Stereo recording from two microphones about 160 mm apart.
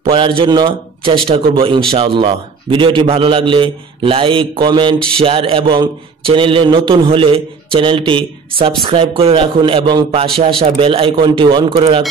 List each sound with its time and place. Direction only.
0.0 s a man's voice: 35° right (ahead or behind)
4.9 s a sound: 5° left (ahead or behind)
5.2 s a man's voice: 35° right (ahead or behind)